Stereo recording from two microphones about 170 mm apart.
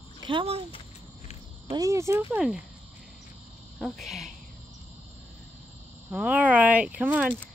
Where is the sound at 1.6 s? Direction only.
20° right (ahead or behind).